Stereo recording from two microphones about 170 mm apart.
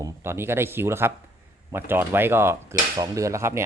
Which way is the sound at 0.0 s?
15° right (ahead or behind).